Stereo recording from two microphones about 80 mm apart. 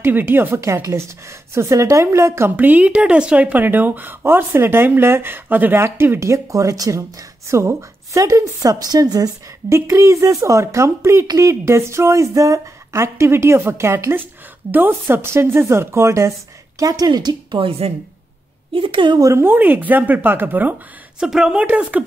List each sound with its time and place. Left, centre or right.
0.0 s speech: right
2.5 s speech: right
9.7 s speech: right
16.8 s speech: right
18.7 s a woman's voice: right
19.1 s speech: right
19.4 s speech: right
21.2 s speech: centre